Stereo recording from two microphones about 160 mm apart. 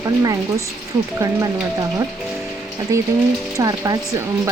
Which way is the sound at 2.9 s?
20° right (ahead or behind).